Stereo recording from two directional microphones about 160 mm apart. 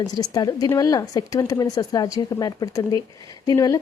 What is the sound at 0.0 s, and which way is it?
A woman's voice, 25° left (ahead or behind).